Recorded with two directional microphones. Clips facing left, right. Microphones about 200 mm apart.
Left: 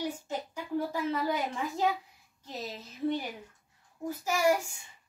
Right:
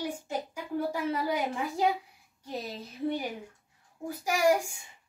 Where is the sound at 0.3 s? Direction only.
10° right (ahead or behind).